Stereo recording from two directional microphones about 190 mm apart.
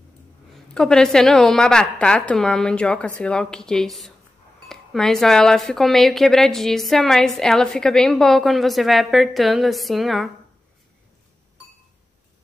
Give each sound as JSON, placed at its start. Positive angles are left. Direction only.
{"t": 0.7, "sound": "speech", "side_deg": 5}